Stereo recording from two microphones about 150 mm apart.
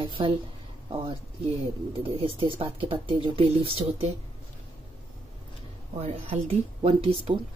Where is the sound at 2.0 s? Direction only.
40° right (ahead or behind).